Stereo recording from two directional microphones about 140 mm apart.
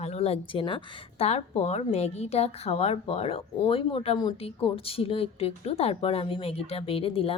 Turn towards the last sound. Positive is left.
turn(degrees=40)  # may be behind; listen again after turning